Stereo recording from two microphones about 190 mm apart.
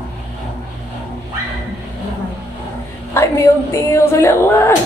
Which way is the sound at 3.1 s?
15° left (ahead or behind).